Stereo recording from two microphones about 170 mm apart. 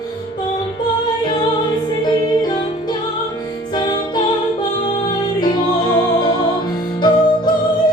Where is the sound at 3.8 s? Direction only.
25° left (ahead or behind).